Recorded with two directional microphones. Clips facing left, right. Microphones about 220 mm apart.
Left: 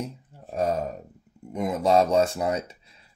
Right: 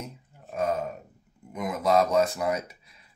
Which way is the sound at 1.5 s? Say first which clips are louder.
Left 3 dB; 30° left (ahead or behind).